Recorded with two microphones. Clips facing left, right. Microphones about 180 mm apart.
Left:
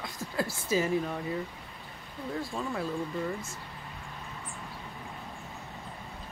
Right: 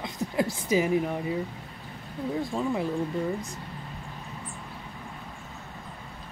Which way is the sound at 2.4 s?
20° right (ahead or behind).